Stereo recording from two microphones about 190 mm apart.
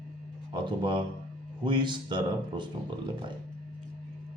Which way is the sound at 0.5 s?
25° right (ahead or behind).